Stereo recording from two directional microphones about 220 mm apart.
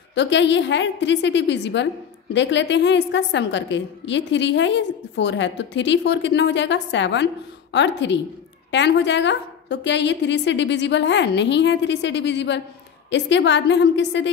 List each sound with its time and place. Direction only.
0.1 s a woman's voice: 55° left (ahead or behind)